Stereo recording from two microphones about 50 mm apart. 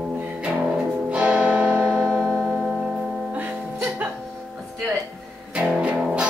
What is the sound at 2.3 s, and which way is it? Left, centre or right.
Tick-tock, centre.